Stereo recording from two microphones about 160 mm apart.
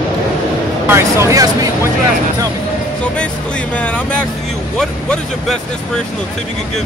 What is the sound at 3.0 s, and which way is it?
Speech, 5° left (ahead or behind).